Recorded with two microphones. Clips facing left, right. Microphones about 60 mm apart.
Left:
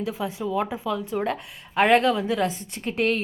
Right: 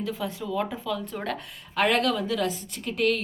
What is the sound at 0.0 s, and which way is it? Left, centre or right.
A woman's voice, centre.